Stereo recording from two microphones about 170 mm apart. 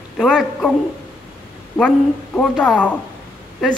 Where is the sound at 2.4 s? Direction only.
5° left (ahead or behind).